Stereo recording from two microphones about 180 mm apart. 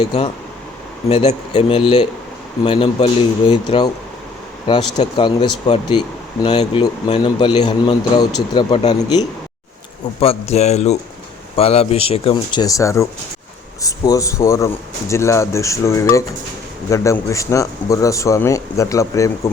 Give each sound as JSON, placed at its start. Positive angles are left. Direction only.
{"t": 1.1, "sound": "speech", "side_deg": 35}
{"t": 4.9, "sound": "speech", "side_deg": 25}
{"t": 10.2, "sound": "speech", "side_deg": 35}